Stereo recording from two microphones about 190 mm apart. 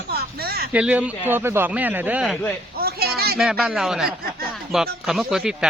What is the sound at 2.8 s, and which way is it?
Speech, 55° right (ahead or behind).